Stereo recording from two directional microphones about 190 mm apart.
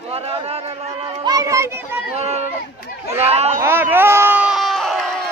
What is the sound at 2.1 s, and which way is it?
Speech, 35° right (ahead or behind).